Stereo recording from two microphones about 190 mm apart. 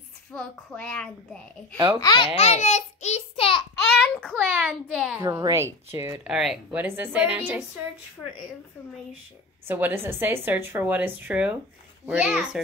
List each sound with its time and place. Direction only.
0.3 s a child's voice: 5° left (ahead or behind)
2.0 s a child's voice: 20° left (ahead or behind)
3.9 s a sound: 5° left (ahead or behind)
4.4 s a child's voice: centre (ahead or behind)
5.1 s a woman's voice: 15° right (ahead or behind)
9.7 s a woman's voice: 10° right (ahead or behind)